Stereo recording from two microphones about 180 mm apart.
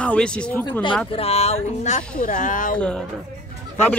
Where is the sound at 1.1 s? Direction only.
35° left (ahead or behind).